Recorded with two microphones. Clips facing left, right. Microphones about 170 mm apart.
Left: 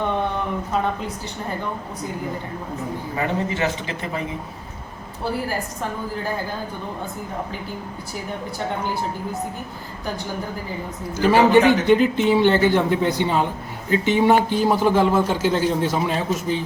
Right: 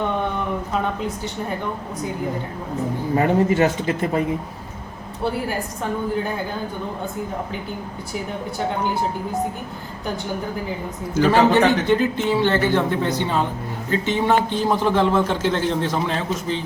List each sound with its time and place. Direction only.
3.2 s speech: 45° right (ahead or behind)
11.2 s a man's voice: 15° left (ahead or behind)